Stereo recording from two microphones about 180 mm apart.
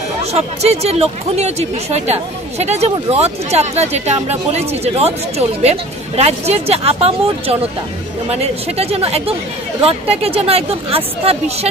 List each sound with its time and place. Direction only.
0.2 s speech: 35° right (ahead or behind)